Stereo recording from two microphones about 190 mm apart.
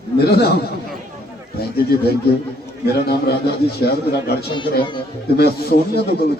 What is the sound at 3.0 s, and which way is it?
A man's voice, 55° left (ahead or behind).